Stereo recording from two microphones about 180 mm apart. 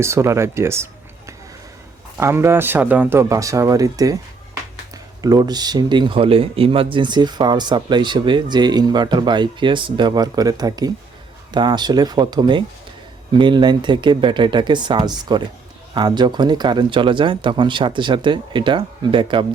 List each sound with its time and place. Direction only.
0.0 s speech: 15° right (ahead or behind)
2.1 s speech: 15° right (ahead or behind)
5.2 s speech: 20° right (ahead or behind)